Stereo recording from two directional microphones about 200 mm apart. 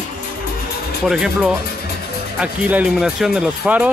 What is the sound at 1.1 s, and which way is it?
Speech, centre (ahead or behind).